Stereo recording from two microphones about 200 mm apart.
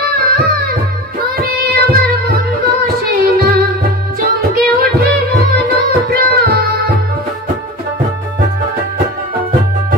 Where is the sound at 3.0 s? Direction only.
50° right (ahead or behind).